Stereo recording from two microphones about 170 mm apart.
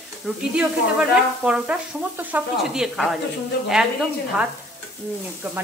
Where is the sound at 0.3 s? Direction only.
Centre (ahead or behind).